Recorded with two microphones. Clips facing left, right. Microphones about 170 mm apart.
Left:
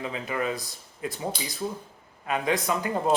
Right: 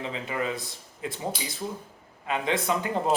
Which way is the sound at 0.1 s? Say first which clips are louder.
Left 1 dB; 25° right (ahead or behind).